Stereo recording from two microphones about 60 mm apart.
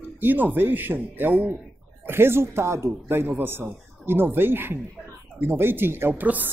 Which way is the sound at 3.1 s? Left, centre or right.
Right.